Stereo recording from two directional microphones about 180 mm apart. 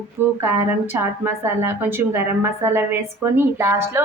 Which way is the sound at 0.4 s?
15° right (ahead or behind).